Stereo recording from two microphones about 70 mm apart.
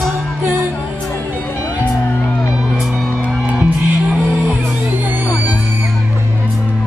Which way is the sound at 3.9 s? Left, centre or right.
Right.